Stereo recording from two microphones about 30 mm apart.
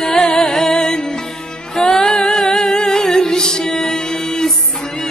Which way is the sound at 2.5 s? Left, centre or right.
Left.